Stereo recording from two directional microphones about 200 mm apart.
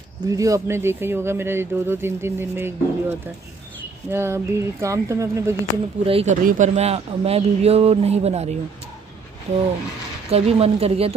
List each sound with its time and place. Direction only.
0.3 s speech: 15° right (ahead or behind)
6.0 s speech: 30° right (ahead or behind)
10.3 s speech: 30° right (ahead or behind)